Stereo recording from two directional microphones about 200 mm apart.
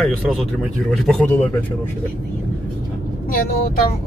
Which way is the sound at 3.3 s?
45° left (ahead or behind).